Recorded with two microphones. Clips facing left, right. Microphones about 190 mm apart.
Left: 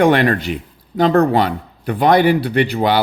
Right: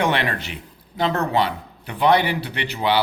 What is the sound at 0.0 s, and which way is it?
A man's voice, 50° left (ahead or behind).